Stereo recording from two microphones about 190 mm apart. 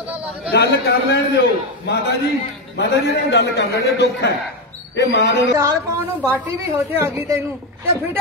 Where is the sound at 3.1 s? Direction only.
60° left (ahead or behind).